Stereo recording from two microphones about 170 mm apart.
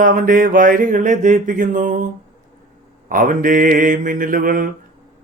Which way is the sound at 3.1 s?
55° right (ahead or behind).